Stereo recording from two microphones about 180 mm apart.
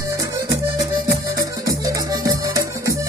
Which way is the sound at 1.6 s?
20° right (ahead or behind).